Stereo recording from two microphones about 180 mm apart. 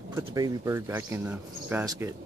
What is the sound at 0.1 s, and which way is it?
Speech, 20° right (ahead or behind).